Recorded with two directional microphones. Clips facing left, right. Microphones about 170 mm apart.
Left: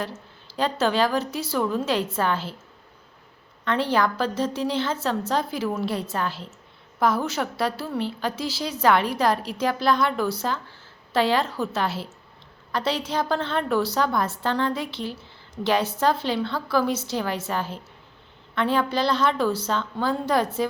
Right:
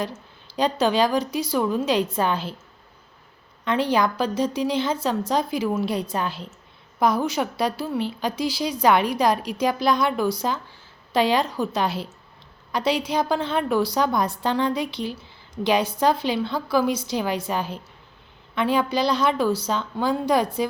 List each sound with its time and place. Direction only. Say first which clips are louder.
0.0 s a woman's voice: right 2 dB; 15° right (ahead or behind)
3.6 s a woman's voice: right 1 dB; 15° right (ahead or behind)